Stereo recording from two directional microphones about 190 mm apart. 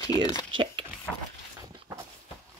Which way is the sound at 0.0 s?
20° left (ahead or behind).